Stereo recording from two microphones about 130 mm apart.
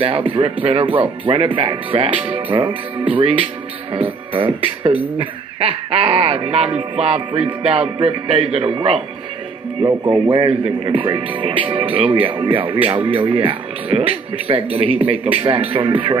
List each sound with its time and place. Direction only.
0.3 s speech: 45° right (ahead or behind)